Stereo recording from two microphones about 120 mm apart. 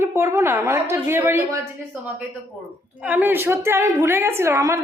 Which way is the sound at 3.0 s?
15° right (ahead or behind).